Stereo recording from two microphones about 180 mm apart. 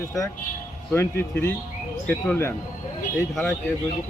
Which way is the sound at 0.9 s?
15° left (ahead or behind).